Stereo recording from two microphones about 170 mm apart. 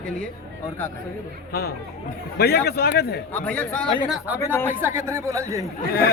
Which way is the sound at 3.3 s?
10° left (ahead or behind).